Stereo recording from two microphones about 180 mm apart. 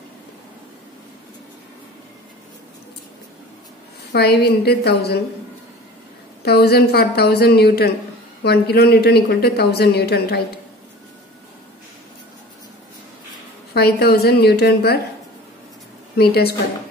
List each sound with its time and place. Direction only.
4.1 s a woman's voice: 65° left (ahead or behind)
6.4 s a woman's voice: 65° left (ahead or behind)
13.7 s a woman's voice: 60° left (ahead or behind)
16.2 s a woman's voice: 60° left (ahead or behind)